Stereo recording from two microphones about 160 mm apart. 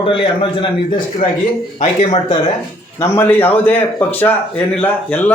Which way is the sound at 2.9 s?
15° left (ahead or behind).